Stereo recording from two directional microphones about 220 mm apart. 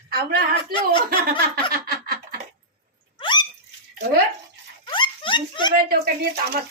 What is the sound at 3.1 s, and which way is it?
Dog, 20° left (ahead or behind).